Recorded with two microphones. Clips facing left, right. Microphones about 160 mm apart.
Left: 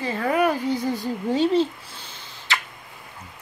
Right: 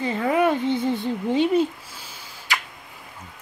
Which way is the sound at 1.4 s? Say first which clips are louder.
Even; 30° left (ahead or behind).